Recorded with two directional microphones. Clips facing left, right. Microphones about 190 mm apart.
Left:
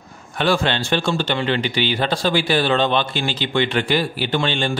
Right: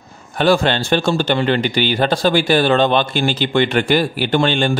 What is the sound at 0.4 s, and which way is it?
A man's voice, 40° right (ahead or behind).